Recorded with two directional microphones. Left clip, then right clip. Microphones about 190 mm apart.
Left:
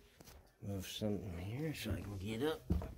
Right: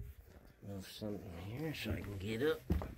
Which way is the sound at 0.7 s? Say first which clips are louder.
Left 4 dB; 45° left (ahead or behind).